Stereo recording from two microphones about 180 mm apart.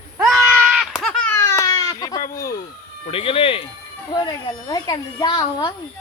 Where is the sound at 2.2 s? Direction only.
55° left (ahead or behind).